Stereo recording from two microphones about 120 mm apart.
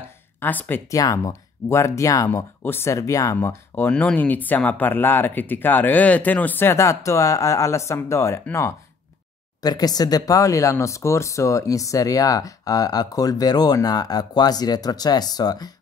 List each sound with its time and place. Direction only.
0.4 s speech: 15° left (ahead or behind)
3.3 s speech: 15° left (ahead or behind); by 15.7 s 35° left (ahead or behind)